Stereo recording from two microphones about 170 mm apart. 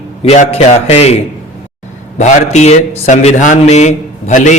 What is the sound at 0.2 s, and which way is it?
Speech, 35° left (ahead or behind).